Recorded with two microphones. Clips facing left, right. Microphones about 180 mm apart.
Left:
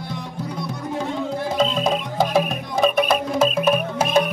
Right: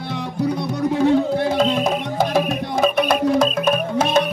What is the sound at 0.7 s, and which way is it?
Music, 75° right (ahead or behind).